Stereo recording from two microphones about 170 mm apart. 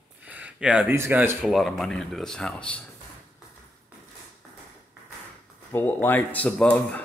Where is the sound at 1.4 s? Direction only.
Centre (ahead or behind).